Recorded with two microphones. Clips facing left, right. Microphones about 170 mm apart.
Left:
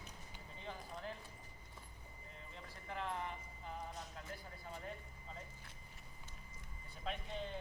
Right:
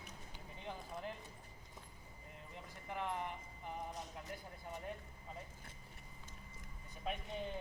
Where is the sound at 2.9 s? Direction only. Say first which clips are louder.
Right 1 dB; 15° right (ahead or behind).